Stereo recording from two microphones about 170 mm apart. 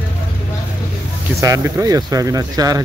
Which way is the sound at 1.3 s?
20° right (ahead or behind).